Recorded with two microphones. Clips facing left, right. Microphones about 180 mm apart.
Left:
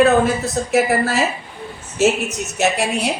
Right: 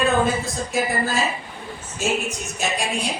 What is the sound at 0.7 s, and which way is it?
A woman's voice, 70° left (ahead or behind).